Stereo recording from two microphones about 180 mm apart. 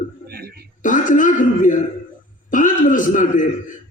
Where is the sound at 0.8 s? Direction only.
45° left (ahead or behind).